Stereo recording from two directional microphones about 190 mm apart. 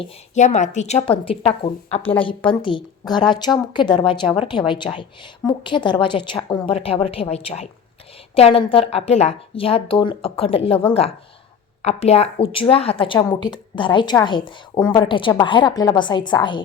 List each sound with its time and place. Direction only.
0.0 s a woman's voice: 40° left (ahead or behind)